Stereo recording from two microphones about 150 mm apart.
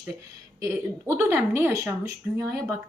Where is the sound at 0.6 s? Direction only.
15° right (ahead or behind).